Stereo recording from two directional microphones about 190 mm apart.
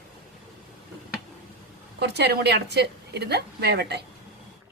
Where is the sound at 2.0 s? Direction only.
60° right (ahead or behind).